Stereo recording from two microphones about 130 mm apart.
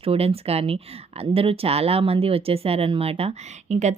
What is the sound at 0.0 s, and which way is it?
Speech, 50° right (ahead or behind).